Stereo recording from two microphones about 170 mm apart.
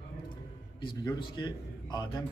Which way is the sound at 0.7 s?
25° left (ahead or behind).